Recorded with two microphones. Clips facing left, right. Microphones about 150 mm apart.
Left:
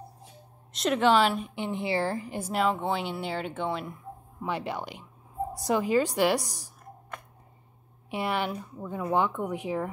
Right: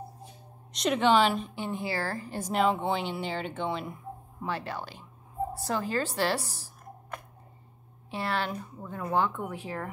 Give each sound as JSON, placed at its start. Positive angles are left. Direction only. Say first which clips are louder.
{"t": 0.7, "sound": "a woman's voice", "louder": "left 1 dB", "side_deg": 0}
{"t": 1.5, "sound": "a woman's voice", "louder": "left 3 dB", "side_deg": 20}
{"t": 2.5, "sound": "a woman's voice", "louder": "right 1 dB", "side_deg": 0}
{"t": 4.5, "sound": "a woman's voice", "louder": "left 2 dB", "side_deg": 20}
{"t": 8.1, "sound": "a woman's voice", "louder": "left 2 dB", "side_deg": 15}
{"t": 8.5, "sound": "a woman's voice", "louder": "left 2 dB", "side_deg": 5}
{"t": 9.1, "sound": "a woman's voice", "louder": "left 2 dB", "side_deg": 15}